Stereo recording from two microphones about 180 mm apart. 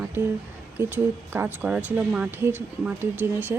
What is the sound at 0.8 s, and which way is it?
A woman's voice, 10° right (ahead or behind).